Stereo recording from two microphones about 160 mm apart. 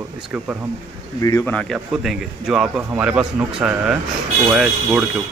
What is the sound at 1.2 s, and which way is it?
Speech, 20° left (ahead or behind).